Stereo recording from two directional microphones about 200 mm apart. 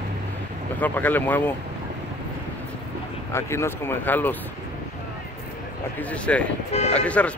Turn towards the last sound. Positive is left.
turn(degrees=5)  # may be behind; listen again after turning